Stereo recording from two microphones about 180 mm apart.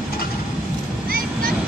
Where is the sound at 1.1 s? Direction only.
55° right (ahead or behind).